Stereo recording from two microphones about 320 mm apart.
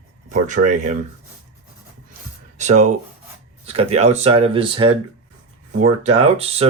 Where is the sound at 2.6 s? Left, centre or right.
Right.